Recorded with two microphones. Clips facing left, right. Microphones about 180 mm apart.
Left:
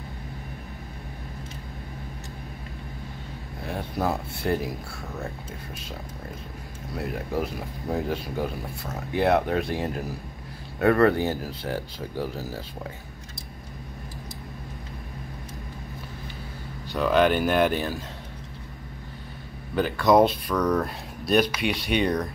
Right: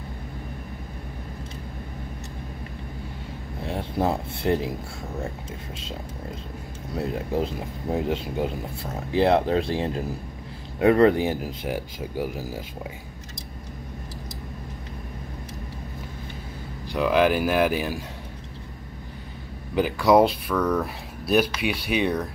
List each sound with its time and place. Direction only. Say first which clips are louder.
3.6 s speech: right 2 dB; 25° right (ahead or behind)
7.0 s speech: right 3 dB; 25° right (ahead or behind)
16.9 s speech: even; 10° right (ahead or behind)
19.7 s speech: right 1 dB; 10° right (ahead or behind)